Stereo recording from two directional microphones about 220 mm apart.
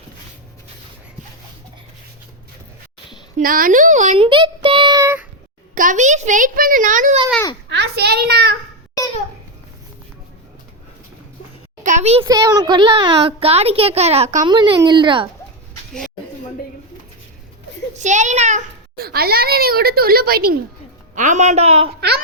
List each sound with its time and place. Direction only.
3.3 s a child's voice: 40° right (ahead or behind); by 5.2 s 15° right (ahead or behind)
5.7 s a child's voice: 35° right (ahead or behind)
7.7 s a child's voice: 50° right (ahead or behind)
11.8 s a sound: 35° right (ahead or behind)
12.2 s speech: 15° right (ahead or behind)
17.9 s a sound: 35° right (ahead or behind)
18.9 s speech: 45° right (ahead or behind)
21.2 s a child's voice: 35° right (ahead or behind)